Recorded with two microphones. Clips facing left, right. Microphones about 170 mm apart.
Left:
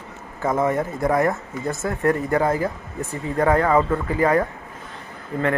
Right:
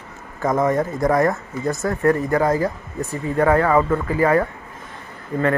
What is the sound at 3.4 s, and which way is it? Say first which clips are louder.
Speech: right 1 dB; 20° left (ahead or behind).